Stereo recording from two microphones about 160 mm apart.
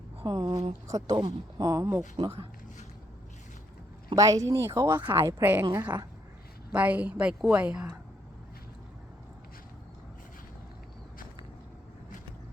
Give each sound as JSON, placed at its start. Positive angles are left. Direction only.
{"t": 0.2, "sound": "a woman's voice", "side_deg": -30}
{"t": 2.2, "sound": "speech", "side_deg": -30}
{"t": 4.1, "sound": "speech", "side_deg": -20}
{"t": 5.7, "sound": "speech", "side_deg": -25}
{"t": 6.7, "sound": "a woman's voice", "side_deg": -10}